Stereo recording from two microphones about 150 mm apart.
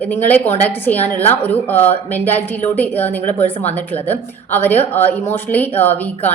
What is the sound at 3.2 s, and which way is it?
Speech, 50° left (ahead or behind).